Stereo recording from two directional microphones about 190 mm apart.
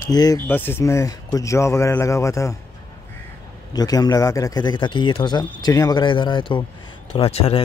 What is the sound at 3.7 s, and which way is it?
Speech, 20° left (ahead or behind).